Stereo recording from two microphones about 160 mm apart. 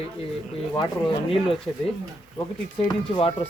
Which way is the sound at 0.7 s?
30° left (ahead or behind).